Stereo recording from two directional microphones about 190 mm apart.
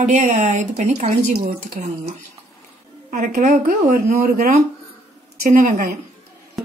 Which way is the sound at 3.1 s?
45° right (ahead or behind).